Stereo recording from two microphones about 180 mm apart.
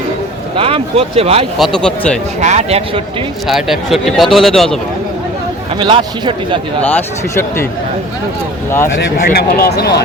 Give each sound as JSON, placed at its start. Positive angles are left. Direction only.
{"t": 0.5, "sound": "speech", "side_deg": -30}
{"t": 1.5, "sound": "speech", "side_deg": 0}
{"t": 2.4, "sound": "speech", "side_deg": -40}
{"t": 3.4, "sound": "speech", "side_deg": 0}
{"t": 5.7, "sound": "speech", "side_deg": -25}
{"t": 6.8, "sound": "speech", "side_deg": 10}
{"t": 9.3, "sound": "speech", "side_deg": 60}